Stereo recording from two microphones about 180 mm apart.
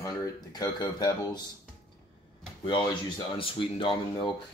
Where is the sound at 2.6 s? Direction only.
25° left (ahead or behind).